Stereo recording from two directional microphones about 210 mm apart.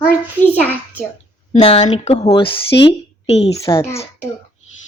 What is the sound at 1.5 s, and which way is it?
A woman's voice, 30° left (ahead or behind).